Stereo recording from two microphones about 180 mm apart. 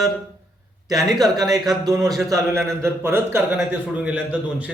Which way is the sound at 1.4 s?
20° right (ahead or behind).